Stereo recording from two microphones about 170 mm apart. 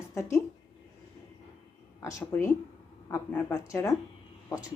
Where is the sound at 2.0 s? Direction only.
10° left (ahead or behind).